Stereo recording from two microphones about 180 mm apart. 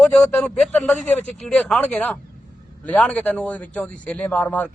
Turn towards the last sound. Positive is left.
turn(degrees=10)  # may be behind; listen again after turning